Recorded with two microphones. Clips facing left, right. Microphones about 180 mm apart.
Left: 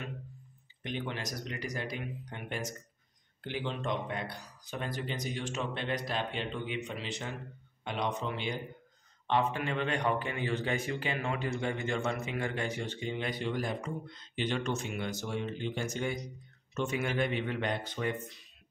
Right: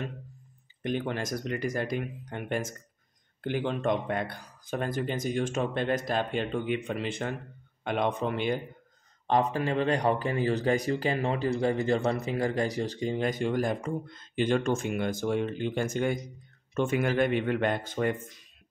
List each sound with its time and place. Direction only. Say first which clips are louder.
0.8 s speech: right 7 dB; 45° right (ahead or behind)
9.3 s speech: right 5 dB; 40° right (ahead or behind)